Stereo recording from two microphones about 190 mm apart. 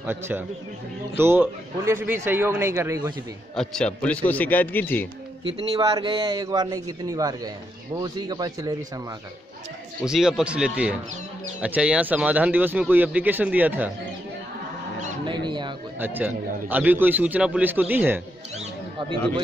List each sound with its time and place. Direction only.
0.0 s speech: 10° right (ahead or behind)
3.5 s a man's voice: 5° left (ahead or behind)
5.8 s a man's voice: 20° right (ahead or behind)
10.0 s speech: 5° right (ahead or behind)
15.2 s speech: 25° right (ahead or behind)
16.0 s speech: 10° right (ahead or behind)